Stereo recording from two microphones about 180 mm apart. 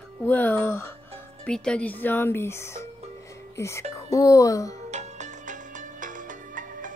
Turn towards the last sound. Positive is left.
turn(degrees=-45)  # may be behind; listen again after turning